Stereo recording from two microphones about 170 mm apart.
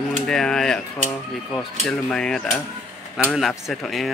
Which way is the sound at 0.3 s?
5° left (ahead or behind).